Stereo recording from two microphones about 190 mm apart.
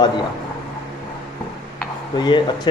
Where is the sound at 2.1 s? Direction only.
25° left (ahead or behind).